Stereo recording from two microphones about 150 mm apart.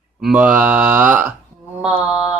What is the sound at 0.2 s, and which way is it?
Mantra, 5° right (ahead or behind).